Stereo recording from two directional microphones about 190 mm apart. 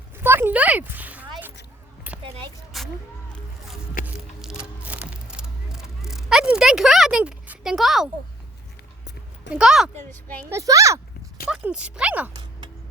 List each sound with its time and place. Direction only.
0.2 s a sound: 10° right (ahead or behind)
4.0 s music: 5° right (ahead or behind)
9.5 s speech: 5° right (ahead or behind)
10.5 s a child's voice: 15° right (ahead or behind)
11.4 s speech: 5° right (ahead or behind)